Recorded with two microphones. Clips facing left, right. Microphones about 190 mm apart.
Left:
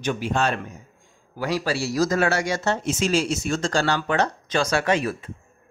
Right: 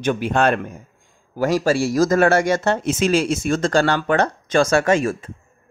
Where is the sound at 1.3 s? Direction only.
45° right (ahead or behind).